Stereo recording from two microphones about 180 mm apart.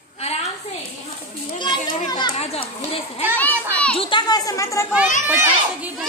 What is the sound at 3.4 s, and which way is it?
Children playing, 5° left (ahead or behind).